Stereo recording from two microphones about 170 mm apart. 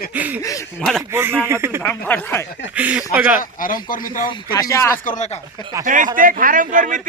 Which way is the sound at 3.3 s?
55° left (ahead or behind).